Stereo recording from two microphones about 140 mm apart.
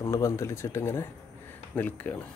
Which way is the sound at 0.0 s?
20° left (ahead or behind).